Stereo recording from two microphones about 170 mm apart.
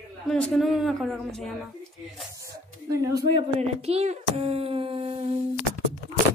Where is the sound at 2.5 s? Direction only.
20° right (ahead or behind).